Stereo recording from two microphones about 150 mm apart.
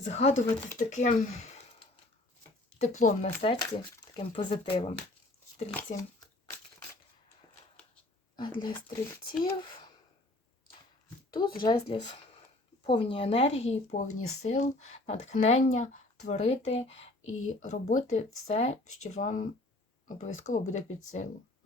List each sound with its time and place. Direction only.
0.1 s speech: 50° left (ahead or behind)
2.7 s speech: 50° left (ahead or behind)
3.4 s speech: 35° left (ahead or behind)
5.9 s speech: 55° left (ahead or behind)
8.4 s speech: 30° left (ahead or behind)
11.3 s speech: 30° left (ahead or behind)
17.6 s speech: 55° left (ahead or behind)